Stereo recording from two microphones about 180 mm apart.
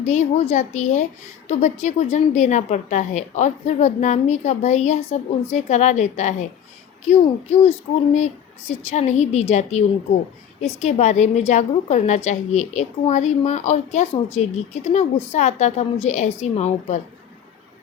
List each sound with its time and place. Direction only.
0.0 s a woman's voice: 40° left (ahead or behind)
8.7 s a woman's voice: 40° left (ahead or behind)